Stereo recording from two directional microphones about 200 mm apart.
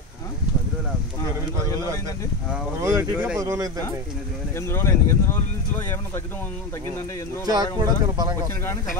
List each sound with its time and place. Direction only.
2.8 s speech: 15° right (ahead or behind)
4.6 s speech: 15° left (ahead or behind)
7.4 s speech: 20° right (ahead or behind)